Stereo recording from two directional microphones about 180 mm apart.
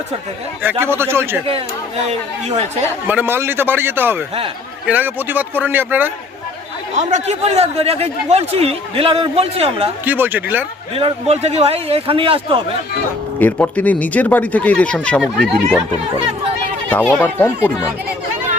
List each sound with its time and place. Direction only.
0.6 s speech: 10° right (ahead or behind)
1.5 s speech: 35° right (ahead or behind)
3.1 s speech: 10° right (ahead or behind)
6.9 s speech: 40° right (ahead or behind)
10.1 s speech: 10° right (ahead or behind)
10.9 s speech: 35° right (ahead or behind)
13.4 s speech: 10° left (ahead or behind)
16.9 s speech: 10° left (ahead or behind)